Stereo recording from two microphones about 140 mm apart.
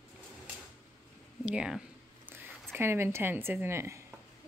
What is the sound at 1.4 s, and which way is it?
Speech, 5° right (ahead or behind).